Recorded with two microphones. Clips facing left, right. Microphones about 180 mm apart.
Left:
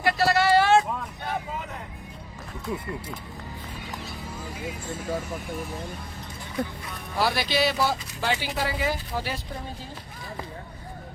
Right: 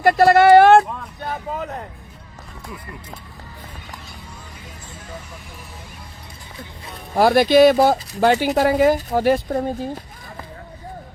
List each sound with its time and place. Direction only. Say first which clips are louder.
0.0 s a sound: right 10 dB; 50° right (ahead or behind)
1.2 s vehicle: right 4 dB; 45° right (ahead or behind)
2.7 s speech: left 6 dB; 25° left (ahead or behind)
5.0 s speech: left 8 dB; 45° left (ahead or behind)
7.2 s speech: right 13 dB; 50° right (ahead or behind)